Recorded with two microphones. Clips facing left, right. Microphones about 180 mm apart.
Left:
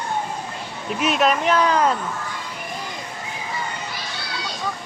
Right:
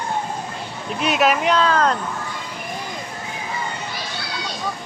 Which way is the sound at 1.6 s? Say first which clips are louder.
Even; 15° left (ahead or behind).